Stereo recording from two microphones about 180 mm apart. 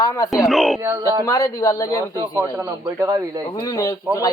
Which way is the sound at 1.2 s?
20° left (ahead or behind).